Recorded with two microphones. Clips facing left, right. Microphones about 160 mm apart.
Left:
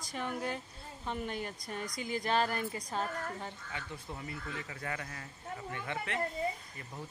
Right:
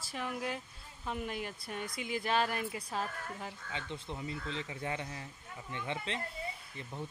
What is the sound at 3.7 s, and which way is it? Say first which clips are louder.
Speech: right 2 dB; 20° right (ahead or behind).